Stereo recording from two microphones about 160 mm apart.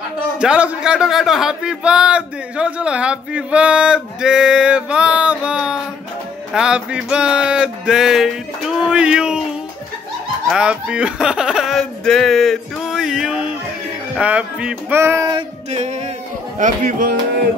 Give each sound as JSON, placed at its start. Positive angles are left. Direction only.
{"t": 0.4, "sound": "a man's voice", "side_deg": -5}
{"t": 6.5, "sound": "music", "side_deg": -5}
{"t": 10.5, "sound": "a man's voice", "side_deg": -5}
{"t": 15.7, "sound": "speech", "side_deg": -45}